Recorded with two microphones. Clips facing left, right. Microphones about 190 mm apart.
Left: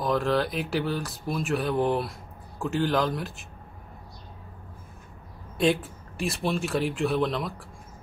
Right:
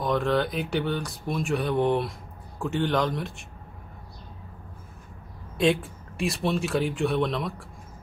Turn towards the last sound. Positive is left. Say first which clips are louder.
# even
turn(degrees=0)  # may be behind; listen again after turning